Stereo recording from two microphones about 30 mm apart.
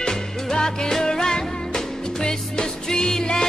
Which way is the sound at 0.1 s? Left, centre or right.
Centre.